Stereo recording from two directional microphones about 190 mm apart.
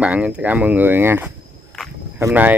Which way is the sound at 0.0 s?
5° right (ahead or behind).